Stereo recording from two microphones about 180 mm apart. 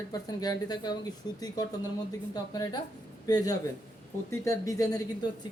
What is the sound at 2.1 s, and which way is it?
Speech, 20° left (ahead or behind).